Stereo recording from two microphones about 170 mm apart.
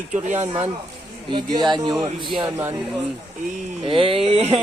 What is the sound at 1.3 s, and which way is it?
A man's voice, 25° right (ahead or behind).